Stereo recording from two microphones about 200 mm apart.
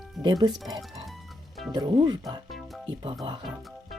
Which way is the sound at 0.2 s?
20° right (ahead or behind).